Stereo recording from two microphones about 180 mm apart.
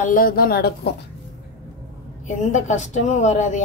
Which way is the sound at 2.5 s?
40° left (ahead or behind).